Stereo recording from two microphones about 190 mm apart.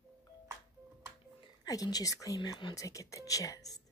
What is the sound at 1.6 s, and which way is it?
Speech, 20° left (ahead or behind).